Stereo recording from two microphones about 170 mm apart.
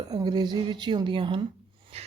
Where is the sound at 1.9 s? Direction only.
35° right (ahead or behind).